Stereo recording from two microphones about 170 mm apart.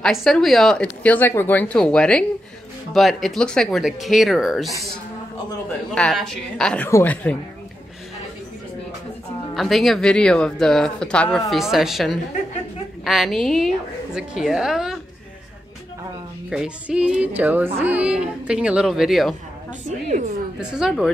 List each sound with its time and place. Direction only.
0.0 s a woman's voice: centre (ahead or behind)
5.9 s a woman's voice: 5° left (ahead or behind)
9.5 s a woman's voice: centre (ahead or behind)
16.4 s speech: 5° right (ahead or behind)
20.1 s speech: 45° right (ahead or behind)
20.7 s a woman's voice: centre (ahead or behind)